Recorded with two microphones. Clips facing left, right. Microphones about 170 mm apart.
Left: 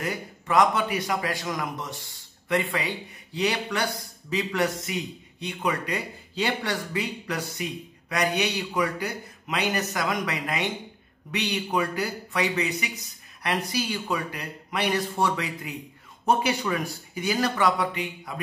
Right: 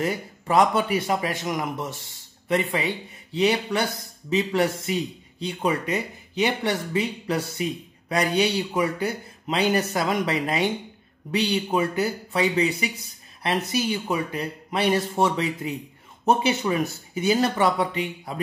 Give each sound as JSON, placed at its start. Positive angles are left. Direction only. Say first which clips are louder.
{"t": 0.0, "sound": "a man's voice", "louder": "right 5 dB", "side_deg": -30}